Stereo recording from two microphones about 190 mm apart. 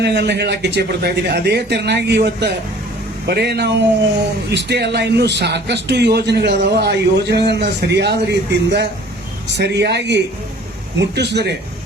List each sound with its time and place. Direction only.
0.0 s a man's voice: 60° right (ahead or behind)